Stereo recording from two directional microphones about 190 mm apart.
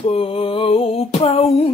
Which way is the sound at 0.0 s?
30° left (ahead or behind).